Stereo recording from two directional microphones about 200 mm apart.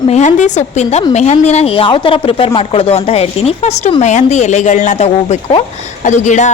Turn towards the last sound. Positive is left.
turn(degrees=35)  # may be behind; listen again after turning